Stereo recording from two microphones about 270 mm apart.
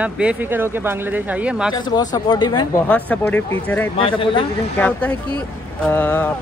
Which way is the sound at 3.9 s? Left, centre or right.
Centre.